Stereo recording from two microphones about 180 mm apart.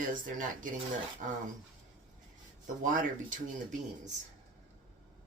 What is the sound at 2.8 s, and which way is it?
Speech, 45° right (ahead or behind).